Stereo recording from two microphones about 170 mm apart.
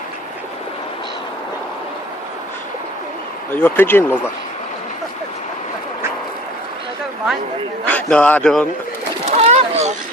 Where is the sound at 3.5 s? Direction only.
10° left (ahead or behind).